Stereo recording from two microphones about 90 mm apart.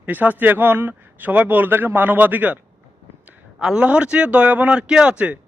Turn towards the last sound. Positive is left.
turn(degrees=-15)  # may be behind; listen again after turning